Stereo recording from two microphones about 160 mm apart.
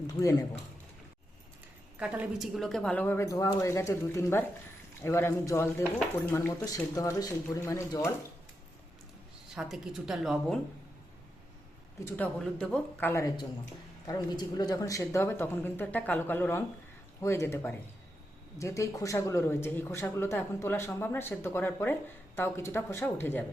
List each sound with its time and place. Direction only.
0.1 s speech: 20° left (ahead or behind)
2.0 s speech: 10° right (ahead or behind); by 8.1 s 20° left (ahead or behind)
9.6 s a woman's voice: 5° right (ahead or behind)
12.0 s speech: 10° left (ahead or behind)